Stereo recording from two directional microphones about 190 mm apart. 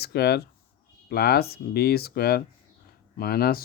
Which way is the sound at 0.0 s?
55° left (ahead or behind).